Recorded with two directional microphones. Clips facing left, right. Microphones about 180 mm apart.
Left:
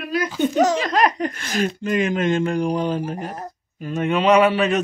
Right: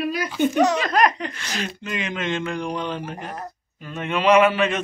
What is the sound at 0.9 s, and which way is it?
Speech, 35° left (ahead or behind).